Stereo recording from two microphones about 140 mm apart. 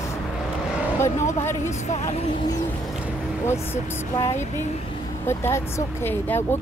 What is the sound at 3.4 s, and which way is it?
Speech, 20° left (ahead or behind).